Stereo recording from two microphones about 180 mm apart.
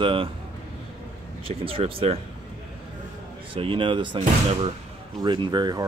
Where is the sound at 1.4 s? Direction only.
30° right (ahead or behind).